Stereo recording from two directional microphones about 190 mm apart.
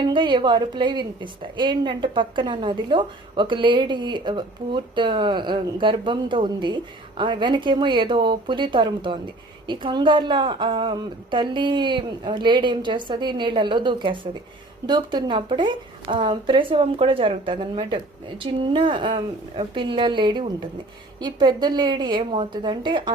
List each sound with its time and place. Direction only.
0.1 s a woman's voice: 25° right (ahead or behind)